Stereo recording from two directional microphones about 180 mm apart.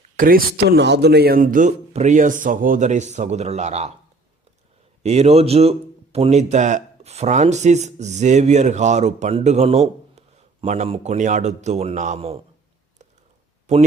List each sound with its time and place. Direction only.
0.2 s speech: 55° right (ahead or behind); by 3.9 s 40° right (ahead or behind)
5.0 s a man's voice: 35° right (ahead or behind)